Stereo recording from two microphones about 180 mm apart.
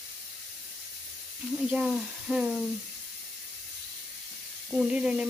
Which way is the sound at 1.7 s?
Centre (ahead or behind).